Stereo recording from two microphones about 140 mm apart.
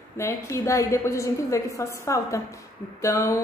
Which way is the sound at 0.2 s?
20° left (ahead or behind).